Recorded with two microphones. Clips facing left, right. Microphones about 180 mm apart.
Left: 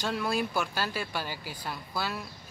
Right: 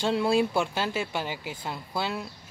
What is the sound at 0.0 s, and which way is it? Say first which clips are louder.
Speech: right 6 dB; 30° right (ahead or behind).